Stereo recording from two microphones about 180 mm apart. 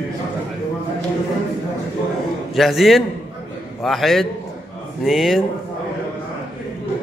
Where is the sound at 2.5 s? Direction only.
Centre (ahead or behind).